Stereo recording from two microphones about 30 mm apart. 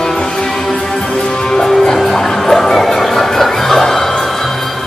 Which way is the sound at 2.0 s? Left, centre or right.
Centre.